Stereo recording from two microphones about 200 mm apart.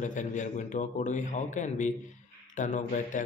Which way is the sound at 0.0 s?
40° left (ahead or behind).